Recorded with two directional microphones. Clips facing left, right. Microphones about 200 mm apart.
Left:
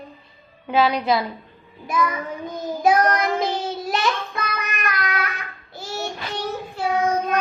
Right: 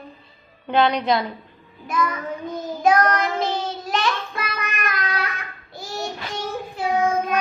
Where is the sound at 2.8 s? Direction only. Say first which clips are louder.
Even; 10° left (ahead or behind).